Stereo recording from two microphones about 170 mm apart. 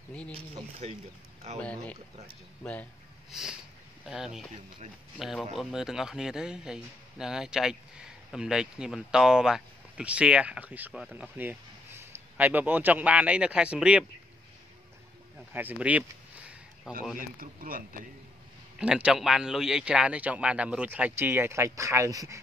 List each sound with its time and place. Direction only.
2.6 s speech: 5° left (ahead or behind)
4.0 s a man's voice: 5° right (ahead or behind)
15.5 s a sound: 10° right (ahead or behind)
17.2 s speech: 55° right (ahead or behind)
18.8 s a man's voice: 5° right (ahead or behind)